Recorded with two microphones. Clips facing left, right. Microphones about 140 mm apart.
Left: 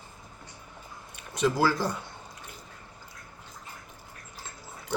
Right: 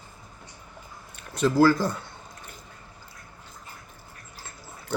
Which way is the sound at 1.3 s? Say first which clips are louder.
Right 5 dB; 15° left (ahead or behind).